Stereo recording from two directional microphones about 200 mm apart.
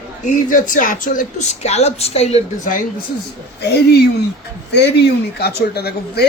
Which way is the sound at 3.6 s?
55° left (ahead or behind).